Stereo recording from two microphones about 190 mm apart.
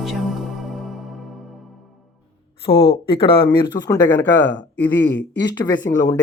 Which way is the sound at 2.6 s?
30° left (ahead or behind).